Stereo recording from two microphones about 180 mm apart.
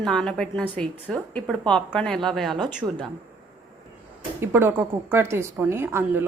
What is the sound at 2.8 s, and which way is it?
Speech, 15° right (ahead or behind).